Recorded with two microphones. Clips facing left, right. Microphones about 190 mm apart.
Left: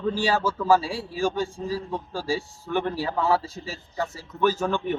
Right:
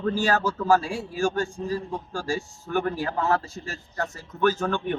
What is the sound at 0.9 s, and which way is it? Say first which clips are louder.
Speech: right 1 dB; 50° right (ahead or behind).